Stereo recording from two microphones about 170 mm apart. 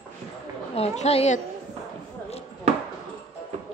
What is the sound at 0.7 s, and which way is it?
Speech, 40° left (ahead or behind).